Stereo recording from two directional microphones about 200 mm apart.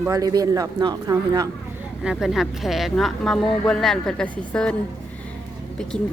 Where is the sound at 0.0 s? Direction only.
15° right (ahead or behind).